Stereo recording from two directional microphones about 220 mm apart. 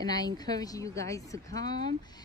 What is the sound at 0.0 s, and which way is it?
Speech, 15° left (ahead or behind).